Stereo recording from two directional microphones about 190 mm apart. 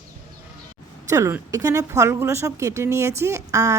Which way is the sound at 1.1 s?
15° right (ahead or behind).